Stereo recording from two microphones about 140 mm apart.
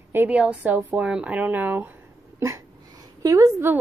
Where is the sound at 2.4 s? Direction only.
20° right (ahead or behind).